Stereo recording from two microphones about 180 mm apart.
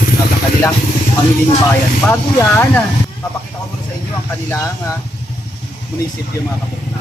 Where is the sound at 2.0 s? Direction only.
10° left (ahead or behind).